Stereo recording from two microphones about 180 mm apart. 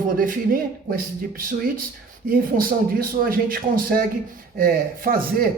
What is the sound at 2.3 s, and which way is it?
A woman's voice, 55° right (ahead or behind).